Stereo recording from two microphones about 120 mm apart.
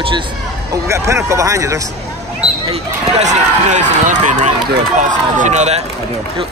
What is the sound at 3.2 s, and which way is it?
Speech, 80° right.